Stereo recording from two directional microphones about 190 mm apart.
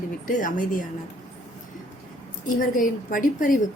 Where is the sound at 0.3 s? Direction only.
45° left (ahead or behind).